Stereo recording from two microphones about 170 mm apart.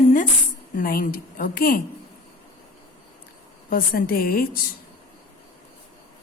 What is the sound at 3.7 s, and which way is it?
Speech, 60° left (ahead or behind).